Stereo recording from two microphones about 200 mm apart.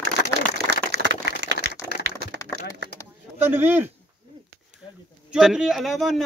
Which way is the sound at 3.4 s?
10° right (ahead or behind).